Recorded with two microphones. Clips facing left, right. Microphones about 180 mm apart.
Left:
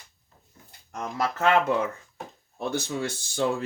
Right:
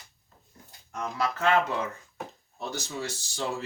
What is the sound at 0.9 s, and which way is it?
Speech, 50° left (ahead or behind).